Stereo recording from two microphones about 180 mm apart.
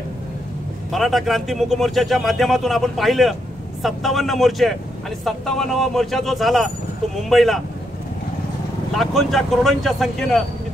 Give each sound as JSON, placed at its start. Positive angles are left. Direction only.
{"t": 0.9, "sound": "speech", "side_deg": 0}
{"t": 8.9, "sound": "speech", "side_deg": 0}